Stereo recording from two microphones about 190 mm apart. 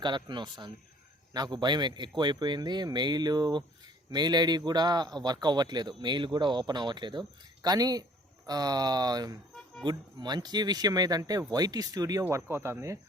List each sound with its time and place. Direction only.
0.0 s speech: 25° right (ahead or behind)
9.5 s music: centre (ahead or behind)
9.8 s speech: 20° right (ahead or behind)